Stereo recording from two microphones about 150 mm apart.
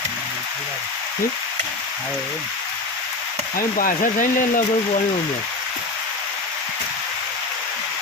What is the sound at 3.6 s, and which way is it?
Speech, 65° left (ahead or behind).